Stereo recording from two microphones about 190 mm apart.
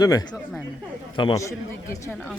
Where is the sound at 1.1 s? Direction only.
25° left (ahead or behind).